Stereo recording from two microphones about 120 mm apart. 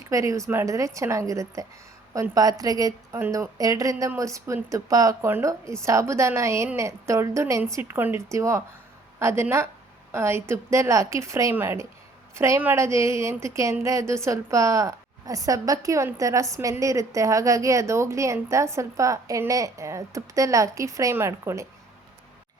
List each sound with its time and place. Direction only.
0.1 s a woman's voice: 25° right (ahead or behind)
3.2 s a woman's voice: 20° right (ahead or behind)